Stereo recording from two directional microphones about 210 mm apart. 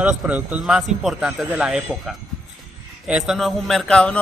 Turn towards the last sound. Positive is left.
turn(degrees=5)  # may be behind; listen again after turning